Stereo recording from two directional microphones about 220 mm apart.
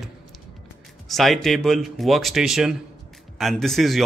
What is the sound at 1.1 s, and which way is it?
Speech, centre (ahead or behind).